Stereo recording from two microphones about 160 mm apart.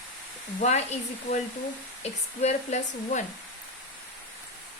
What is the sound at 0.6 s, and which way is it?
Speech, 45° left (ahead or behind).